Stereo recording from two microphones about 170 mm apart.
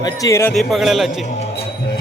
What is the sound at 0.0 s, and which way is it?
Speech, 20° left (ahead or behind).